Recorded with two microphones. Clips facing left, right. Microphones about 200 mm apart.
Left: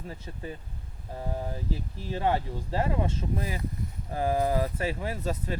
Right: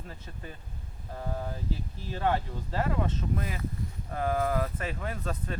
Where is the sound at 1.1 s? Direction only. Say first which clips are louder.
Left 2 dB; 20° left (ahead or behind).